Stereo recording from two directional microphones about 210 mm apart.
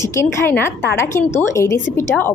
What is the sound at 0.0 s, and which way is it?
A woman's voice, 15° left (ahead or behind).